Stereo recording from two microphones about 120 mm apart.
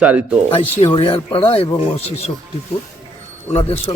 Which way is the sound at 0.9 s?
45° left (ahead or behind).